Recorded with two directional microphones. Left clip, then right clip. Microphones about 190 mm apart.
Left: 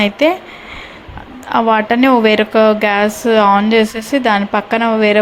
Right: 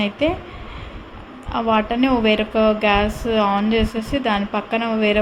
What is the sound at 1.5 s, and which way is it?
A woman's voice, 20° left (ahead or behind).